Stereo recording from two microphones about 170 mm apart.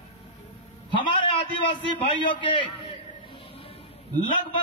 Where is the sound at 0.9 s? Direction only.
30° left (ahead or behind).